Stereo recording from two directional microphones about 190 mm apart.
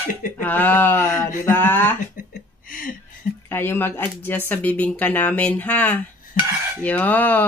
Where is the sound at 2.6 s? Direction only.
45° left (ahead or behind).